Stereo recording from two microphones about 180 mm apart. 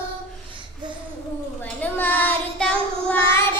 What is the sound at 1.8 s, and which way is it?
Child singing, 10° left (ahead or behind).